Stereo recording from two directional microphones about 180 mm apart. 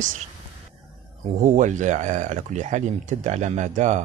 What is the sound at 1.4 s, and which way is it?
Speech, 45° right (ahead or behind).